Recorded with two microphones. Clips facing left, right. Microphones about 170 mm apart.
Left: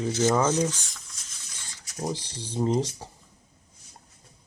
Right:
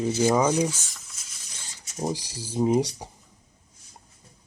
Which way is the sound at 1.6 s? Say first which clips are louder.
Right 2 dB; 20° right (ahead or behind).